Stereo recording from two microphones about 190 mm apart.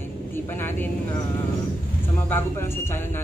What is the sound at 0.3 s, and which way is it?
Vehicle, 10° left (ahead or behind).